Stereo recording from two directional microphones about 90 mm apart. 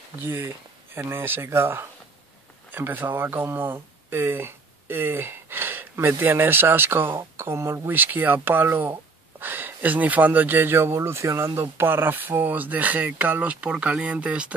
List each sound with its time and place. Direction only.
0.2 s speech: 25° right (ahead or behind)
7.9 s speech: 20° right (ahead or behind)